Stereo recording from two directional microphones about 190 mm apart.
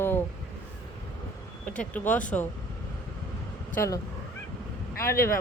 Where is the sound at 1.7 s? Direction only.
10° left (ahead or behind).